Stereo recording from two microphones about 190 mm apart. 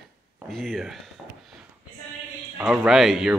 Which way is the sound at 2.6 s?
5° right (ahead or behind).